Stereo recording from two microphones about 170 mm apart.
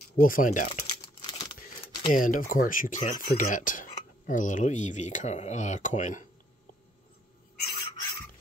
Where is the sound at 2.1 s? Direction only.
55° left (ahead or behind).